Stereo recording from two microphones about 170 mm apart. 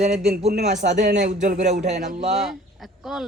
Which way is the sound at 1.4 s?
50° right (ahead or behind).